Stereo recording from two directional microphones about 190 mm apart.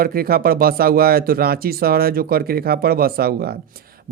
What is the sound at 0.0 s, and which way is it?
Speech, 50° right (ahead or behind).